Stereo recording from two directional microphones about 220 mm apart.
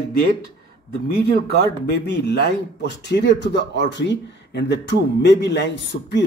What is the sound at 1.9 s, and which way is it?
Speech, 50° left (ahead or behind).